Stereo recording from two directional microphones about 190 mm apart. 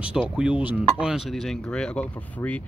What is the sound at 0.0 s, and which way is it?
Speech, 5° right (ahead or behind).